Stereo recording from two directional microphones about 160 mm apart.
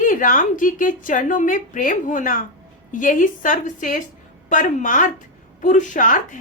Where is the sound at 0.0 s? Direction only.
60° left (ahead or behind).